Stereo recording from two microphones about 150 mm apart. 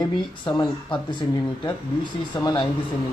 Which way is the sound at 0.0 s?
30° left (ahead or behind).